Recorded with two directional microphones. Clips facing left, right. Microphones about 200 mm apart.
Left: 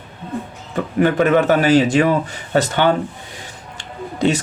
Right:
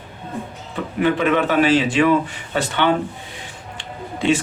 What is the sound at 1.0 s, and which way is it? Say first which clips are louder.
Speech: left 3 dB; 45° left (ahead or behind).